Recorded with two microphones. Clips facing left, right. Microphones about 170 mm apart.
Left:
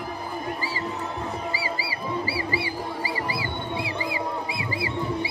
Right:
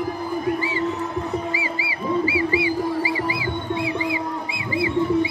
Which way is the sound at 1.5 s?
40° left (ahead or behind).